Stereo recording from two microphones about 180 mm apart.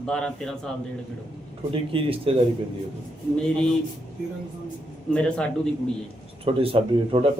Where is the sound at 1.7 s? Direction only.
30° right (ahead or behind).